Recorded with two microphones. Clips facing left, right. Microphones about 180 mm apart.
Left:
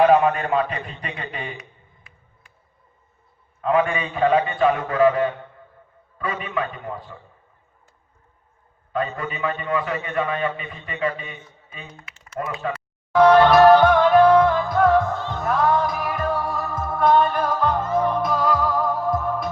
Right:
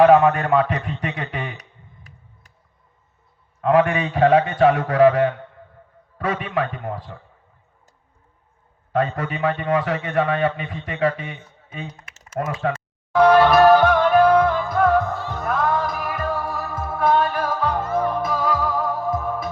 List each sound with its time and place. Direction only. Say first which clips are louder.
0.1 s a man's voice: right 3 dB; 75° right (ahead or behind)
3.6 s a man's voice: right 3 dB; 75° right (ahead or behind)
9.1 s a man's voice: right 3 dB; 75° right (ahead or behind)
12.4 s speech: right 3 dB; 45° right (ahead or behind)
13.2 s music: left 1 dB; 5° right (ahead or behind)